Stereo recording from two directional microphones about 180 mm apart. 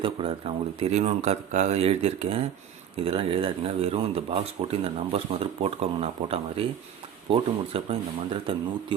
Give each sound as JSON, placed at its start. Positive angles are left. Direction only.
{"t": 0.0, "sound": "speech", "side_deg": -30}